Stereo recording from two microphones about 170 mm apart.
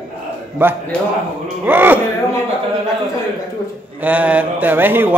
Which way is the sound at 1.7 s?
10° right (ahead or behind).